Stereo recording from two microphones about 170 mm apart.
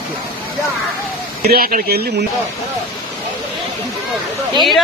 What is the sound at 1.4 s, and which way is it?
Speech, 60° right (ahead or behind).